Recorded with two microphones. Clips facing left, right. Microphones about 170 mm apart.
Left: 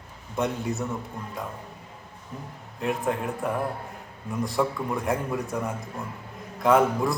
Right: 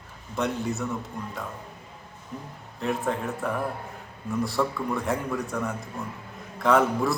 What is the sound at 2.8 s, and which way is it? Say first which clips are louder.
Speech: left 1 dB; 15° left (ahead or behind).